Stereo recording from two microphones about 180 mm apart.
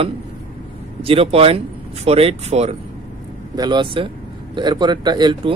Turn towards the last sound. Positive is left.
turn(degrees=-25)  # may be behind; listen again after turning